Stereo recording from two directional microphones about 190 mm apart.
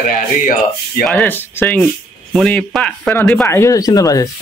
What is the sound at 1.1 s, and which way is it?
Speech, 10° left (ahead or behind).